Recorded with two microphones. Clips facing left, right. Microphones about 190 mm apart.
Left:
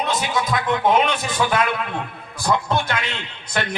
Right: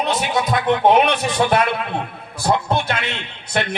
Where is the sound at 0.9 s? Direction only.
65° right (ahead or behind).